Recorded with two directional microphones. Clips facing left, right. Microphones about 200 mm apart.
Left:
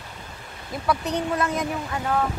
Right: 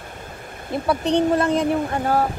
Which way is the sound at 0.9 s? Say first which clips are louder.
Right 6 dB; 30° right (ahead or behind).